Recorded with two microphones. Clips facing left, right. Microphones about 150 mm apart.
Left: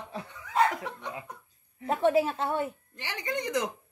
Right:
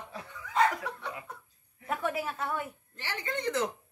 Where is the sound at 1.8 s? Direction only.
25° left (ahead or behind).